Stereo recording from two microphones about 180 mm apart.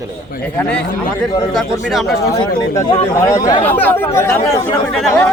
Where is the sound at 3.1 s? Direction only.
15° left (ahead or behind).